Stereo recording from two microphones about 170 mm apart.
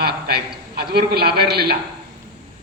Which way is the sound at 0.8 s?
65° right (ahead or behind).